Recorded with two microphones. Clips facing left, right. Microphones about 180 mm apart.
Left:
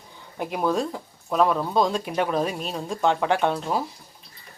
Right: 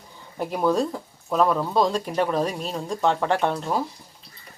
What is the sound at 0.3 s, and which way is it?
Speech, centre (ahead or behind).